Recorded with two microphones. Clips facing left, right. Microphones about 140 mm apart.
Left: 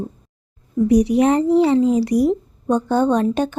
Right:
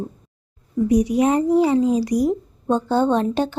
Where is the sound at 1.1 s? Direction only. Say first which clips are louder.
Left 2 dB; 15° right (ahead or behind).